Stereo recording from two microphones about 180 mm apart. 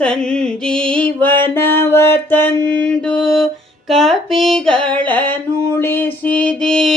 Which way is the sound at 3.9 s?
Centre (ahead or behind).